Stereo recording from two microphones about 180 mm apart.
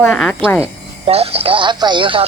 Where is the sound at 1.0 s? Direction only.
35° right (ahead or behind).